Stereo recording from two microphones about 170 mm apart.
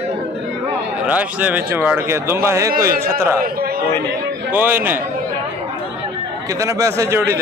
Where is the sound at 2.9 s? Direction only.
55° right (ahead or behind).